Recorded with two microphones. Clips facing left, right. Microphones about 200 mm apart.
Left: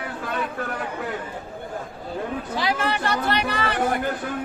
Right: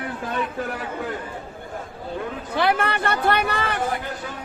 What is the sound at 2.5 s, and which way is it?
Speech, 60° right (ahead or behind).